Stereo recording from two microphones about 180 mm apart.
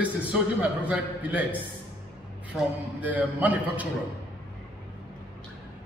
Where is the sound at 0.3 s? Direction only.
5° right (ahead or behind).